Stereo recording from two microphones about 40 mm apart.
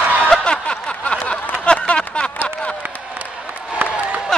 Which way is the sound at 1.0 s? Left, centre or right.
Left.